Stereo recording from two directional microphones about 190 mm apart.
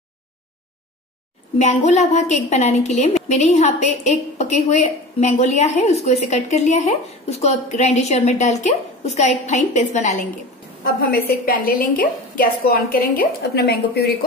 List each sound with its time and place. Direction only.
1.6 s a woman's voice: 35° left (ahead or behind)
10.8 s a woman's voice: 50° left (ahead or behind)